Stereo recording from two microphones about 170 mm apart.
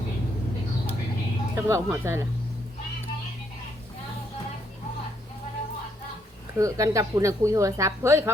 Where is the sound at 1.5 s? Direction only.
15° right (ahead or behind).